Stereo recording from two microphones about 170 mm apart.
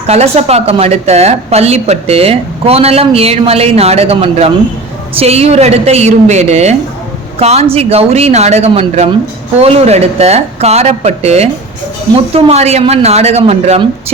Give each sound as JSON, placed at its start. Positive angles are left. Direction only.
{"t": 0.1, "sound": "a woman's voice", "side_deg": -40}